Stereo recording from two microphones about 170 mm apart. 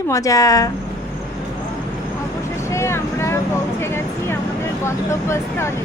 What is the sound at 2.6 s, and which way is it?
Vehicle, 15° left (ahead or behind).